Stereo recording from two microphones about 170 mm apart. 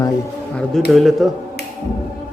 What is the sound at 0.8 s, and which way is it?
Speech, centre (ahead or behind).